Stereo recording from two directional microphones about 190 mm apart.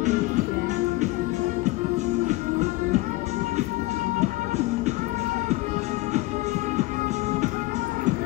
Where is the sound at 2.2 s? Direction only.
40° right (ahead or behind).